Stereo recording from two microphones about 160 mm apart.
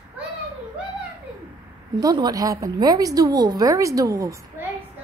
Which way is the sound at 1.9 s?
25° right (ahead or behind).